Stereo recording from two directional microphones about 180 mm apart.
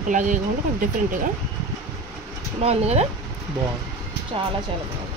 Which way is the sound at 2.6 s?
35° right (ahead or behind).